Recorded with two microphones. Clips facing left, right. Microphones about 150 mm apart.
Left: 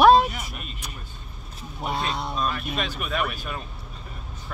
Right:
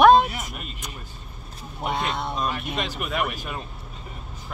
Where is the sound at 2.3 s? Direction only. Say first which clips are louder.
Even; 20° right (ahead or behind).